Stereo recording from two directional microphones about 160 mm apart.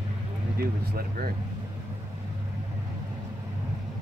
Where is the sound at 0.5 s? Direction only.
65° right (ahead or behind).